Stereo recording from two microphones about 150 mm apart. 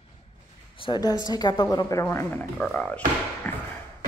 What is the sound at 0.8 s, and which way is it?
A woman's voice, 25° left (ahead or behind).